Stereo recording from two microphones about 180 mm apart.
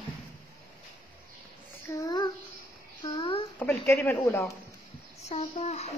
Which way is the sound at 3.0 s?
30° left (ahead or behind).